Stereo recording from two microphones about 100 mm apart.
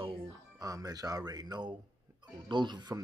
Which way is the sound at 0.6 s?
35° right (ahead or behind).